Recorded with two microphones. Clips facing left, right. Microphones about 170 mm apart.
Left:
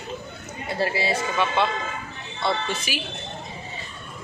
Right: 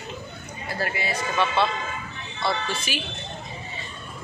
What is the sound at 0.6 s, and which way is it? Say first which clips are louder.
Speech: left 4 dB; 25° left (ahead or behind).